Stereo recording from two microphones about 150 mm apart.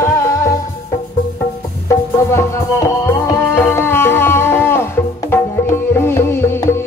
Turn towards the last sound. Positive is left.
turn(degrees=15)  # may be behind; listen again after turning